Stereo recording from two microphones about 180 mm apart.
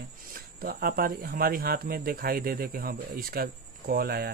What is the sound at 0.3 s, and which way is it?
Speech, 55° right (ahead or behind).